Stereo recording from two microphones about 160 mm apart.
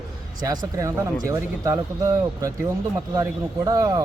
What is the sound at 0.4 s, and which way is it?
A man's voice, 25° right (ahead or behind).